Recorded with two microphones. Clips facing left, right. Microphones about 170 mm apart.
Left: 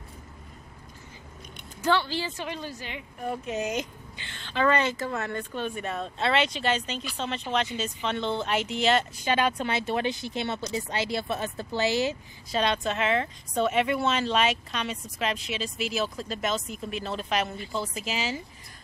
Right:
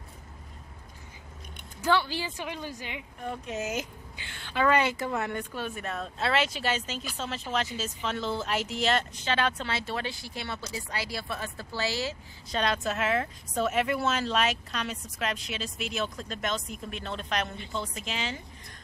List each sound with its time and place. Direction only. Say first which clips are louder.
1.8 s speech: left 1 dB; 10° right (ahead or behind)
3.3 s speech: left 3 dB; centre (ahead or behind)
9.2 s speech: left 3 dB; 10° left (ahead or behind)
12.4 s speech: left 2 dB; centre (ahead or behind)